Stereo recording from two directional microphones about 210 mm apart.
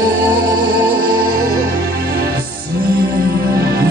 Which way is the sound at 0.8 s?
45° right (ahead or behind).